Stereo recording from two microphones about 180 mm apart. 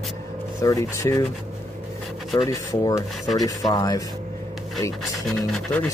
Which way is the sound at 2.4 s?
20° left (ahead or behind).